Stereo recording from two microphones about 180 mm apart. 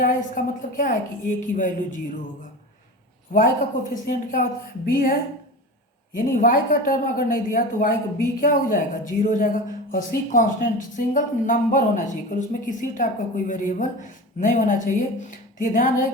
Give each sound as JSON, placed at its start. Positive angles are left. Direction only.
{"t": 0.0, "sound": "speech", "side_deg": 45}
{"t": 3.3, "sound": "speech", "side_deg": 50}
{"t": 6.1, "sound": "speech", "side_deg": 50}